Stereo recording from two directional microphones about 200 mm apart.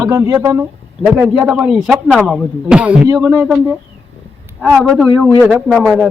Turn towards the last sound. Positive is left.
turn(degrees=0)  # may be behind; listen again after turning